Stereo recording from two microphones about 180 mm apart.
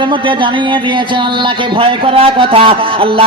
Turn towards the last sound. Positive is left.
turn(degrees=-30)  # may be behind; listen again after turning